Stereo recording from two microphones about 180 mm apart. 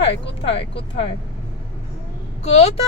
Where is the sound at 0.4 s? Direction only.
30° left (ahead or behind).